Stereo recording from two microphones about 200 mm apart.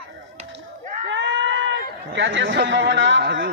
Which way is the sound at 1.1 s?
65° right (ahead or behind).